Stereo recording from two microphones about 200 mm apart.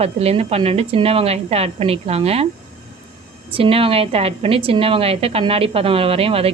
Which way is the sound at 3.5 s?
30° right (ahead or behind).